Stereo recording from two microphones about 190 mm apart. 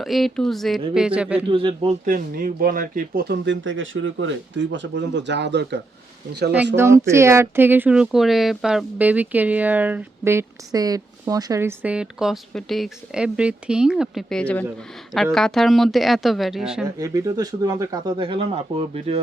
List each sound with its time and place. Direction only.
0.0 s speech: centre (ahead or behind)
1.5 s speech: 25° right (ahead or behind)
2.0 s speech: 50° right (ahead or behind)
3.4 s speech: 75° right (ahead or behind)
6.7 s speech: 15° right (ahead or behind)
16.8 s speech: 15° right (ahead or behind)